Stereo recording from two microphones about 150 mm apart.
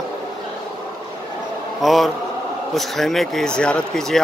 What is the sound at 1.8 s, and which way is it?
A man's voice, centre (ahead or behind).